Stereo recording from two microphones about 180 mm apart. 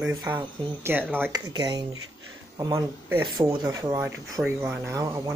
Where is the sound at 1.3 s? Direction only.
25° right (ahead or behind).